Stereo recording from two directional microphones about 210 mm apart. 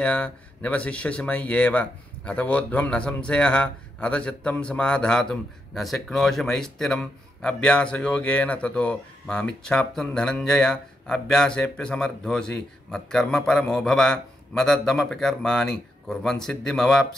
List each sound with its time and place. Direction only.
0.0 s speech: 5° left (ahead or behind)